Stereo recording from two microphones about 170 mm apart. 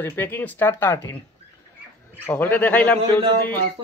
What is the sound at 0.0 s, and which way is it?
Speech, 10° left (ahead or behind).